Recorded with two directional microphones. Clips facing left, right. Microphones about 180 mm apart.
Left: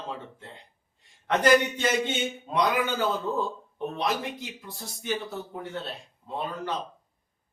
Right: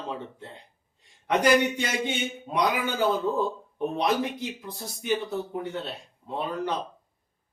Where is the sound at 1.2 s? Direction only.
15° right (ahead or behind).